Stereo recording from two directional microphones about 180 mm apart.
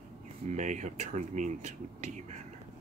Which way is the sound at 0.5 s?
40° right (ahead or behind).